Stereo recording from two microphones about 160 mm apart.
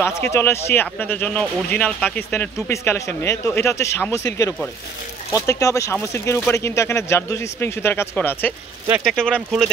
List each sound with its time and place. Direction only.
0.0 s speech: 15° left (ahead or behind)
5.3 s speech: 20° left (ahead or behind); by 9.7 s 5° left (ahead or behind)